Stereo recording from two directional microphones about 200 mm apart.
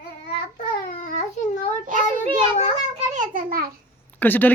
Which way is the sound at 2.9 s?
40° right (ahead or behind).